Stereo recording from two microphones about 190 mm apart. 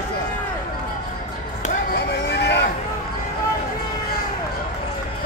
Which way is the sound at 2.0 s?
65° left (ahead or behind).